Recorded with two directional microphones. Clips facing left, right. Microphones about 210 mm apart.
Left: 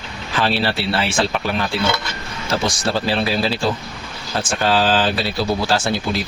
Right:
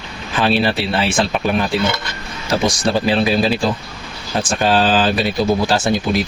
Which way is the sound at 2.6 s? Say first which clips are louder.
Right 5 dB; 15° right (ahead or behind).